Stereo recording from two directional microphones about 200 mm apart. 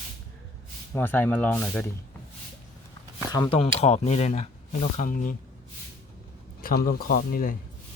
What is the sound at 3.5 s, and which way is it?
Speech, 30° left (ahead or behind).